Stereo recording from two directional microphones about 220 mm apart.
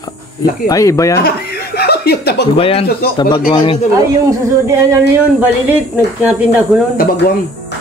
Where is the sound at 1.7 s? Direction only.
45° left (ahead or behind).